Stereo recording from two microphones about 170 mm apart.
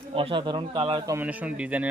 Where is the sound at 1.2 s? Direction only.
10° right (ahead or behind).